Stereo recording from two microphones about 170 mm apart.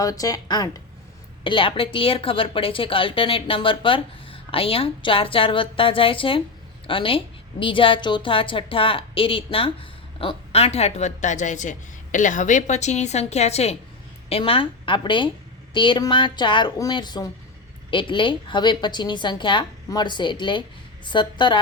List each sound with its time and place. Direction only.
0.0 s a woman's voice: 20° left (ahead or behind)